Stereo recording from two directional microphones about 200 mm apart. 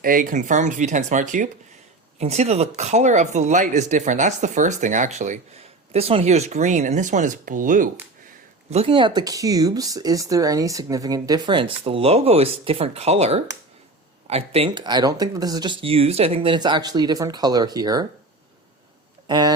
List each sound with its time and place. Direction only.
0.0 s speech: 45° right (ahead or behind)
8.7 s speech: 30° right (ahead or behind)
19.3 s speech: 20° right (ahead or behind)